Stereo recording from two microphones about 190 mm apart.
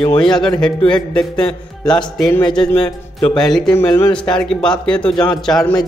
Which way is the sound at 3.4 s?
5° left (ahead or behind).